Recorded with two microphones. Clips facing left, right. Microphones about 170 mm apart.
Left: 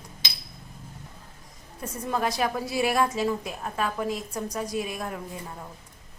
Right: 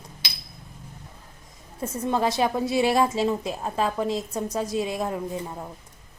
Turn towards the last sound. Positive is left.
turn(degrees=-25)  # may be behind; listen again after turning